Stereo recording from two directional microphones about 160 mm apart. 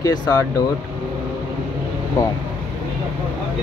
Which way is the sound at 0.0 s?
25° left (ahead or behind).